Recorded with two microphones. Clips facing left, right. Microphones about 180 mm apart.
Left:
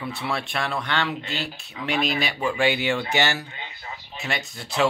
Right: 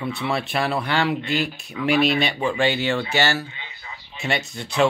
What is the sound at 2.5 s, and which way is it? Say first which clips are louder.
Speech: left 1 dB; 10° left (ahead or behind).